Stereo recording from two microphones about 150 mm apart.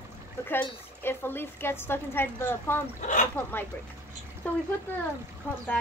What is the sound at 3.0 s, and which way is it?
Speech, 55° left (ahead or behind).